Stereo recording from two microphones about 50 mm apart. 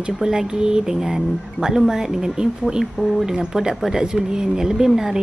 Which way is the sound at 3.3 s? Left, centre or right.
Centre.